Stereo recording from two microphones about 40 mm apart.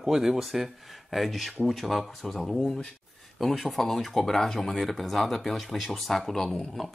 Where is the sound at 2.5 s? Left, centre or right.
Centre.